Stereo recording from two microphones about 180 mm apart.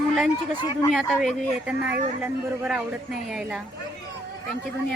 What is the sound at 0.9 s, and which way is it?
Speech, centre (ahead or behind).